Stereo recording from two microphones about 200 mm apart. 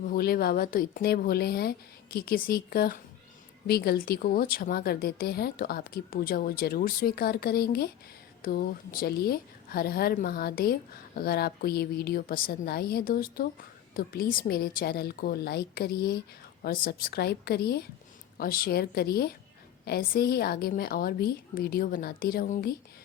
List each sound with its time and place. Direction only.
0.0 s speech: 50° left (ahead or behind)